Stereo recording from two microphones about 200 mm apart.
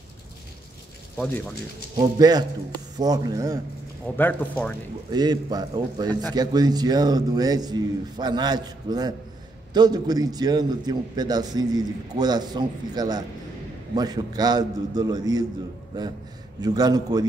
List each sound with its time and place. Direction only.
2.0 s a man's voice: 20° right (ahead or behind)
4.0 s a man's voice: 10° left (ahead or behind)
5.1 s a man's voice: 20° right (ahead or behind)
16.6 s a man's voice: 20° right (ahead or behind)